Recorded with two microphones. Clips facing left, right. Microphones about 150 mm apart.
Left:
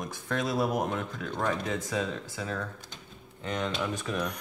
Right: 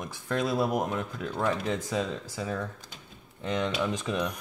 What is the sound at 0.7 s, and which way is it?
Speech, 10° right (ahead or behind).